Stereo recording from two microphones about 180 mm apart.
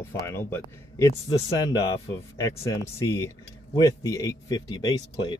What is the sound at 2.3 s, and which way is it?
Speech, 15° left (ahead or behind).